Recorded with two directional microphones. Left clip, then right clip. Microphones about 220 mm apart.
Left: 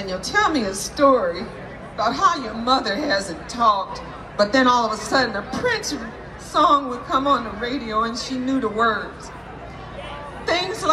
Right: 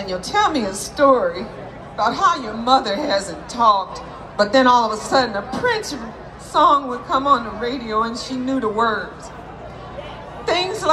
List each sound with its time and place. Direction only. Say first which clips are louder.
0.0 s a woman's voice: right 2 dB; 20° right (ahead or behind)
10.4 s music: right 2 dB; 15° right (ahead or behind)